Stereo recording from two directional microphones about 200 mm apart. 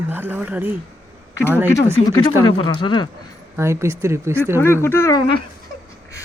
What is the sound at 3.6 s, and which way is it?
Speech, 15° right (ahead or behind).